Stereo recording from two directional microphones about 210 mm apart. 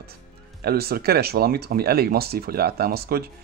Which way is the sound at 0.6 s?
50° right (ahead or behind).